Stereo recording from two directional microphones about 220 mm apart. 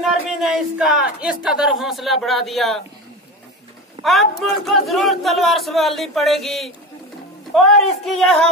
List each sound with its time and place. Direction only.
0.0 s speech: centre (ahead or behind)
4.0 s speech: centre (ahead or behind)